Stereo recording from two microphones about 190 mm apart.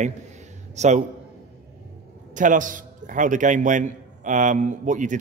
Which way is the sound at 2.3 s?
45° right (ahead or behind).